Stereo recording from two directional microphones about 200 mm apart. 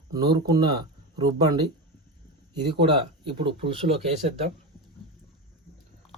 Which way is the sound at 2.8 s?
25° right (ahead or behind).